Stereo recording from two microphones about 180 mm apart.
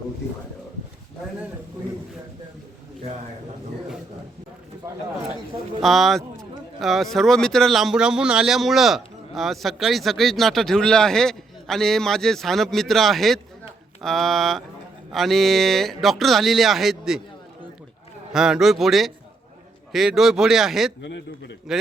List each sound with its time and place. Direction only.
5.8 s speech: centre (ahead or behind)
18.3 s speech: centre (ahead or behind)
21.0 s a man's voice: 75° left (ahead or behind)